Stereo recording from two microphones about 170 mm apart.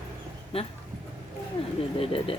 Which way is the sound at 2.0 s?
35° left (ahead or behind).